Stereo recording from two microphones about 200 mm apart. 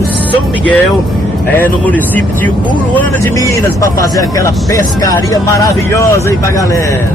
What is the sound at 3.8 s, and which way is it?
Speech, 15° left (ahead or behind).